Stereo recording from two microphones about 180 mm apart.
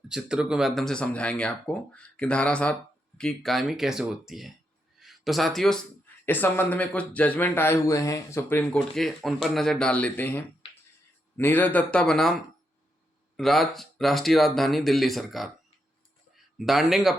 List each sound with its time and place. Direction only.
0.1 s speech: 5° right (ahead or behind)
13.3 s speech: centre (ahead or behind)